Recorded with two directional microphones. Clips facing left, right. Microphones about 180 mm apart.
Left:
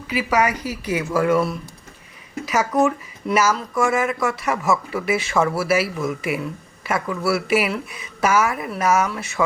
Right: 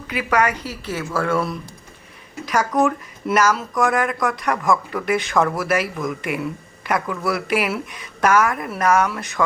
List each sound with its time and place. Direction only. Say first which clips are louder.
0.1 s speech: even; 5° left (ahead or behind)